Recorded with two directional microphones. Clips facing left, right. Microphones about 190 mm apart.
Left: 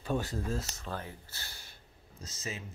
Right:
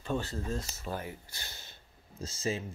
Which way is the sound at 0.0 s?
10° left (ahead or behind).